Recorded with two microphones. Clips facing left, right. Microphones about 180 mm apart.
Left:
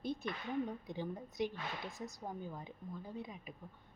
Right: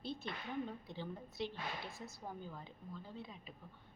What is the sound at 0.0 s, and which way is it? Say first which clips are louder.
A woman's voice: left 4 dB; 15° left (ahead or behind).